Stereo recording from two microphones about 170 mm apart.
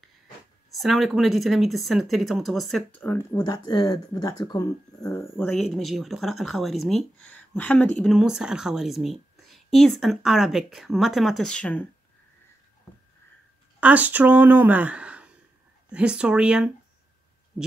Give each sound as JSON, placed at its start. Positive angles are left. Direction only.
{"t": 0.7, "sound": "speech", "side_deg": 0}
{"t": 3.3, "sound": "speech", "side_deg": 25}
{"t": 5.4, "sound": "speech", "side_deg": 0}
{"t": 13.7, "sound": "speech", "side_deg": -10}